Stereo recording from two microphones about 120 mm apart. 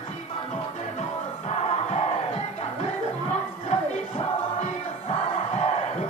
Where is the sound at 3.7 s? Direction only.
70° left (ahead or behind).